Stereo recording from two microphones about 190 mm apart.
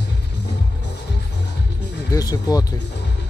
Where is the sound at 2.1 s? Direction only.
20° left (ahead or behind).